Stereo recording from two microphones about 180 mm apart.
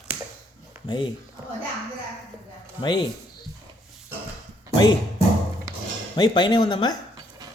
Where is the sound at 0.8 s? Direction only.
25° left (ahead or behind).